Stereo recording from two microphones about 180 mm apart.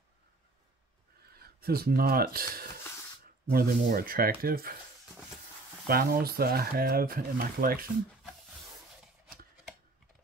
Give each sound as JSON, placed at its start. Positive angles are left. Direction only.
{"t": 1.3, "sound": "speech", "side_deg": -60}
{"t": 5.9, "sound": "speech", "side_deg": -55}